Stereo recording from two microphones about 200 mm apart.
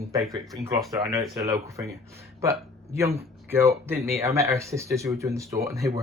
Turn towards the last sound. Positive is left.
turn(degrees=-15)  # may be behind; listen again after turning